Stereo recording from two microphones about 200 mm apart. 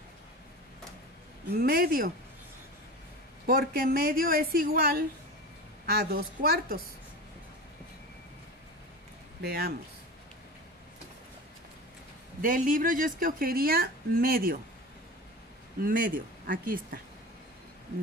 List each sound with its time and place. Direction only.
1.5 s a woman's voice: 50° right (ahead or behind)
3.4 s a woman's voice: 50° right (ahead or behind)
9.4 s a woman's voice: 55° right (ahead or behind)
12.4 s a woman's voice: 45° right (ahead or behind)
15.8 s a woman's voice: 45° right (ahead or behind)